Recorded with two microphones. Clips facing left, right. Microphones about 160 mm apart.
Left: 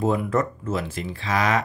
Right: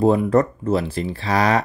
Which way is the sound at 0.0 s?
35° right (ahead or behind).